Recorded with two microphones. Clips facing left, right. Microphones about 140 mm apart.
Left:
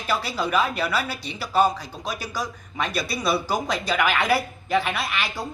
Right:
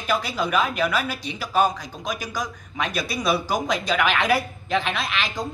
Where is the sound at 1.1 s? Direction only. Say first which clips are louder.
Right 2 dB; 15° right (ahead or behind).